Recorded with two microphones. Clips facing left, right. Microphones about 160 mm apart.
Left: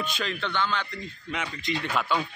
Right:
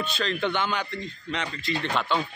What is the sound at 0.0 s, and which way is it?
Speech, 10° left (ahead or behind).